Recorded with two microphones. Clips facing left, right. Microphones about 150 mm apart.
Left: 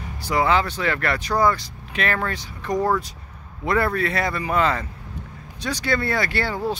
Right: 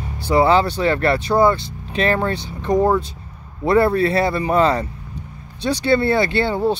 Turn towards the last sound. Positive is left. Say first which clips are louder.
# right 6 dB
turn(degrees=-25)  # may be behind; listen again after turning